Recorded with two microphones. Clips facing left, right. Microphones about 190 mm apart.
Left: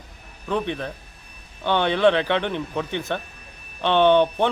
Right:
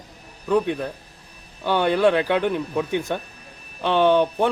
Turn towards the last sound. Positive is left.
turn(degrees=-5)  # may be behind; listen again after turning